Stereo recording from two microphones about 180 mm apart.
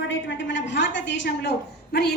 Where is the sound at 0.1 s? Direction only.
85° left.